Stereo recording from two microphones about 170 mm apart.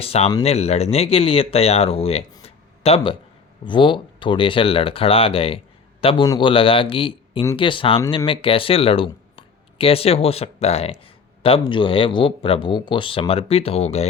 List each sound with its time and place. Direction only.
0.0 s speech: 35° left (ahead or behind)
2.4 s a sound: 35° left (ahead or behind)
3.6 s a man's voice: 30° left (ahead or behind)